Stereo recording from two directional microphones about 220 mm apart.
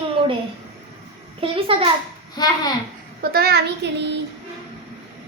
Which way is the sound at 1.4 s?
25° right (ahead or behind).